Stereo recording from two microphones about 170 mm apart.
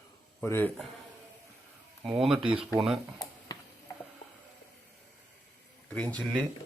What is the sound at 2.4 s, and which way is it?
Speech, 30° right (ahead or behind).